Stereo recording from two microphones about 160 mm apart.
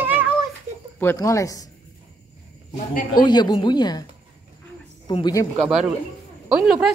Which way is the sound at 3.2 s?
25° left (ahead or behind).